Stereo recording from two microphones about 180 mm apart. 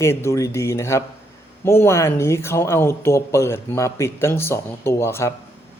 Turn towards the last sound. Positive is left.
turn(degrees=15)  # may be behind; listen again after turning